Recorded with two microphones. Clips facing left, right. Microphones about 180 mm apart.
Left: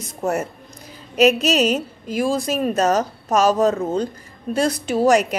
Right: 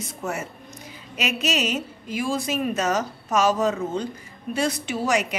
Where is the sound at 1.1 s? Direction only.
35° left (ahead or behind).